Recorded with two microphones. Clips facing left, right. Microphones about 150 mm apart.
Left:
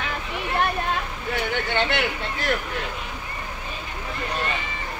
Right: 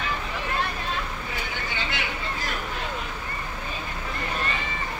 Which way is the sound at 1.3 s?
65° left (ahead or behind).